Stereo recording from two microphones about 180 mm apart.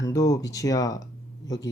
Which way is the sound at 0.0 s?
20° left (ahead or behind).